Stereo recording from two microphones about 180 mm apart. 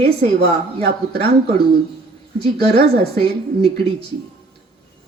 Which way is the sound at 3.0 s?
30° right (ahead or behind).